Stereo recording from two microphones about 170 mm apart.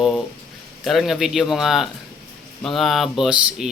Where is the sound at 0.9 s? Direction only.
Centre (ahead or behind).